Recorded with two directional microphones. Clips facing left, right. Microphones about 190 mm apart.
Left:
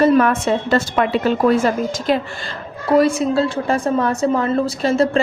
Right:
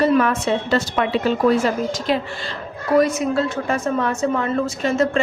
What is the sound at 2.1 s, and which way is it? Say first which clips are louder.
Speech: left 3 dB; 50° left (ahead or behind).